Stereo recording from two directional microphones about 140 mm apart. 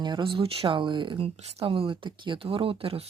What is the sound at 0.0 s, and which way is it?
Speech, 35° right (ahead or behind).